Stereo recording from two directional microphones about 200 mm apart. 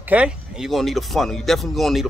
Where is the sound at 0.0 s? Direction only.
5° right (ahead or behind).